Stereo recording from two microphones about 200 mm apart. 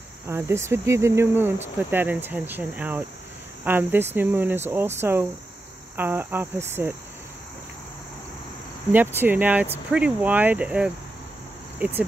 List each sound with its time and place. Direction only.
0.3 s speech: 10° right (ahead or behind)
8.9 s speech: 10° right (ahead or behind)